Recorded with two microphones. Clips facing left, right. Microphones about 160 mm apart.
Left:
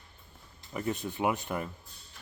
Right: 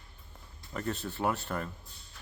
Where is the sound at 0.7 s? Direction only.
10° left (ahead or behind).